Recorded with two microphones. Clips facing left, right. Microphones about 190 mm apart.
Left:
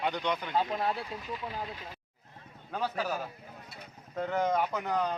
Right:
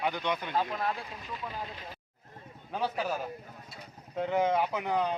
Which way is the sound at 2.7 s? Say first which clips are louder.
Right 1 dB; 5° right (ahead or behind).